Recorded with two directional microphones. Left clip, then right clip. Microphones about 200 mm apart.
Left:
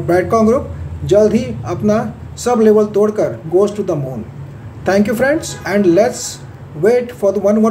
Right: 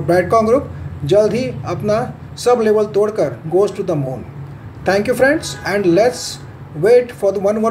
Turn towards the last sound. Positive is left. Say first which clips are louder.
# left 2 dB
turn(degrees=10)  # may be behind; listen again after turning